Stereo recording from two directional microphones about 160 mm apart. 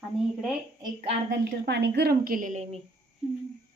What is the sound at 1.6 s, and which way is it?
A woman's voice, 90° right.